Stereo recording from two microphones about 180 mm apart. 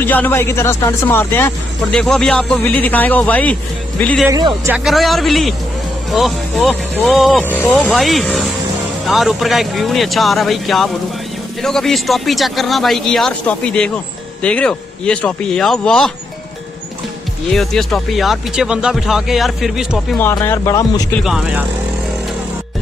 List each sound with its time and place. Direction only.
0.0 s speech: 10° left (ahead or behind)
4.3 s speech: 20° right (ahead or behind)
4.7 s speech: centre (ahead or behind)
17.5 s speech: centre (ahead or behind)
20.3 s speech: 15° left (ahead or behind)
21.1 s speech: centre (ahead or behind)